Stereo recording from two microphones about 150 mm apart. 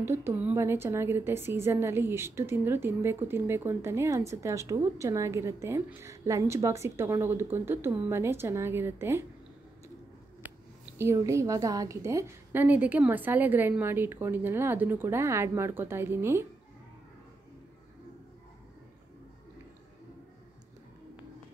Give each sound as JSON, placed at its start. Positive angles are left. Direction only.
{"t": 0.0, "sound": "a woman's voice", "side_deg": -15}
{"t": 11.0, "sound": "a woman's voice", "side_deg": -20}